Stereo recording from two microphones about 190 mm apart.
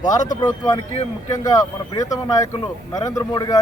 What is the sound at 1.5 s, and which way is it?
Speech, 20° left (ahead or behind).